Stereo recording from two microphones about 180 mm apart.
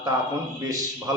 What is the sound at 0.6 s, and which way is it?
Speech, 20° right (ahead or behind).